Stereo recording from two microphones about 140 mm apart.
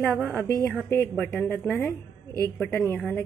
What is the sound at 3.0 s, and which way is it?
Speech, 10° left (ahead or behind).